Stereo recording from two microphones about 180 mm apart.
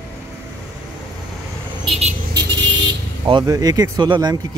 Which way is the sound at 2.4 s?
65° right (ahead or behind).